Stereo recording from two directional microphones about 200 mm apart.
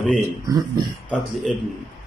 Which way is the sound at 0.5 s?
20° right (ahead or behind).